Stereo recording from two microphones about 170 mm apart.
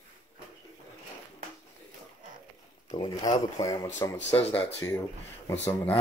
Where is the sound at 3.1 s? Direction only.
20° left (ahead or behind).